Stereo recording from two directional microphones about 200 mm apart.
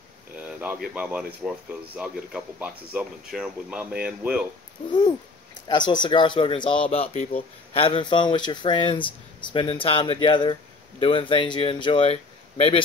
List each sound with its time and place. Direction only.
0.5 s speech: 5° right (ahead or behind)
4.8 s owl: 30° left (ahead or behind)
5.7 s speech: 20° left (ahead or behind)